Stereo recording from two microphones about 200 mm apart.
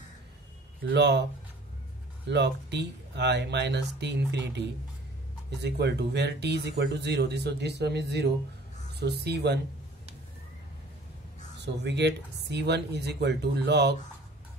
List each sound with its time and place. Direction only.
0.8 s speech: 60° right (ahead or behind)
2.2 s speech: 60° right (ahead or behind)
11.6 s speech: 60° right (ahead or behind)